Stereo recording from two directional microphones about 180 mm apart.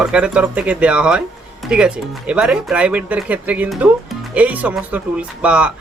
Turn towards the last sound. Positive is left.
turn(degrees=-5)  # may be behind; listen again after turning